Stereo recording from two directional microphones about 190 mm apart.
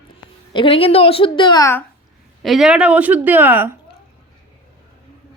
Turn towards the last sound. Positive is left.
turn(degrees=-10)  # may be behind; listen again after turning